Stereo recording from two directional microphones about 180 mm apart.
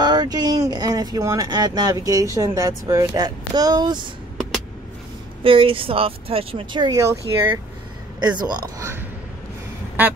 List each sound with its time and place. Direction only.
0.0 s speech: 25° right (ahead or behind)
5.4 s speech: 30° right (ahead or behind); by 10.1 s 10° right (ahead or behind)